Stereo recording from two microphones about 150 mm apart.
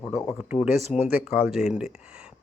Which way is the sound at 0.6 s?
Centre (ahead or behind).